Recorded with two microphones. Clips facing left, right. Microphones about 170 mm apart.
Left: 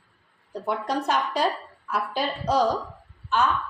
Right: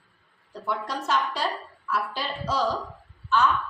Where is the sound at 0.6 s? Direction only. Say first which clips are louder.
Left 4 dB; 45° left (ahead or behind).